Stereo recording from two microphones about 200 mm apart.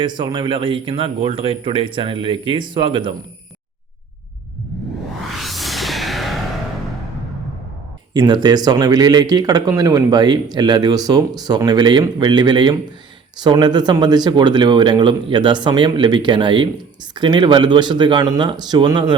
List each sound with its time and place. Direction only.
0.0 s speech: 25° right (ahead or behind)
5.3 s music: centre (ahead or behind)
8.1 s speech: 20° right (ahead or behind)